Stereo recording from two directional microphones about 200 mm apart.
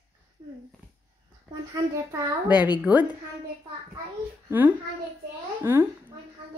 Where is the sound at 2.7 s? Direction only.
5° right (ahead or behind).